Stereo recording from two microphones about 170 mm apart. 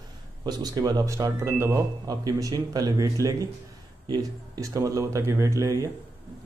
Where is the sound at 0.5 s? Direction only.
25° right (ahead or behind).